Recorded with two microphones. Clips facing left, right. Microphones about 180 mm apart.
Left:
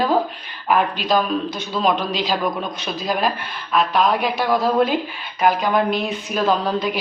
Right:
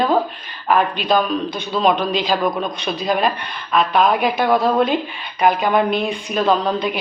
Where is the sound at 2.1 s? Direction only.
50° right (ahead or behind).